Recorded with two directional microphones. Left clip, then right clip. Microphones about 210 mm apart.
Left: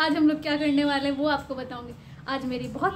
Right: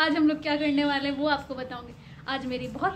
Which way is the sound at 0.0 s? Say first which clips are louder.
Left 1 dB; centre (ahead or behind).